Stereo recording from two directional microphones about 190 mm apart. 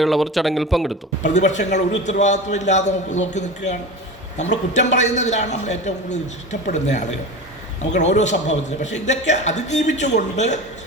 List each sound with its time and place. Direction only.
0.0 s speech: centre (ahead or behind)
1.2 s a man's voice: 40° left (ahead or behind)